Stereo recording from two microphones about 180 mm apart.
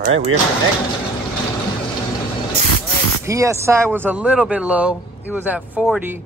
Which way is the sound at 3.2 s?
15° right (ahead or behind).